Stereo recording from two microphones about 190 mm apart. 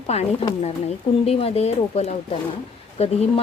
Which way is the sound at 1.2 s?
30° left (ahead or behind).